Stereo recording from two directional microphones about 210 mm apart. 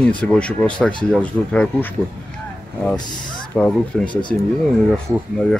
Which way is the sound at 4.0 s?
20° left (ahead or behind).